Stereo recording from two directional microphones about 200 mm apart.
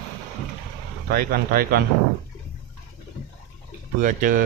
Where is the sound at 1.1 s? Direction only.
50° right (ahead or behind).